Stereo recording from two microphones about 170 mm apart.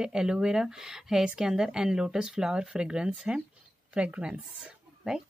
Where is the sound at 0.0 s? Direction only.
5° right (ahead or behind).